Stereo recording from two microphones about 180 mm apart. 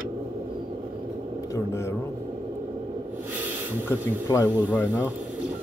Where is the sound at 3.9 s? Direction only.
15° left (ahead or behind).